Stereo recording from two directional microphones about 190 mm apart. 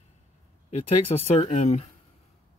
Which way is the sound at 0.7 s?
35° left (ahead or behind).